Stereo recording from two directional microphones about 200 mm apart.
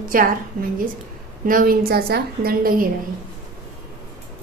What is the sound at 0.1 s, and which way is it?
A woman's voice, 45° right (ahead or behind).